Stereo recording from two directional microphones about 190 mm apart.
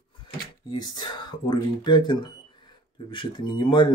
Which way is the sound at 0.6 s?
25° left (ahead or behind).